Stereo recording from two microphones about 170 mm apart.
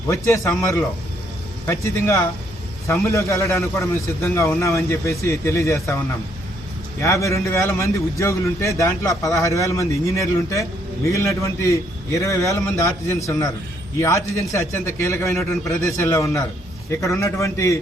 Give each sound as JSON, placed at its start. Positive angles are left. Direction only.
{"t": 0.1, "sound": "a man's voice", "side_deg": 15}
{"t": 7.0, "sound": "a man's voice", "side_deg": 20}